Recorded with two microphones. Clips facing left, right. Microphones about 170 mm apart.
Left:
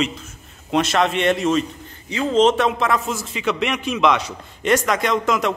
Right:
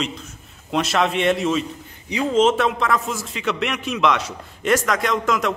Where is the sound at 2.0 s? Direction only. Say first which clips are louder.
Left 1 dB; 15° right (ahead or behind).